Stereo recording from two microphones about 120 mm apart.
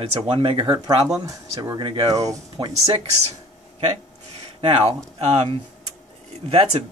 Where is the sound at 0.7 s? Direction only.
35° right (ahead or behind).